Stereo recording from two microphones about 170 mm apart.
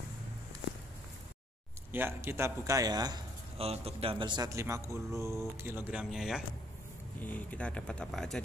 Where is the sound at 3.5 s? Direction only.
35° right (ahead or behind); by 6.4 s centre (ahead or behind).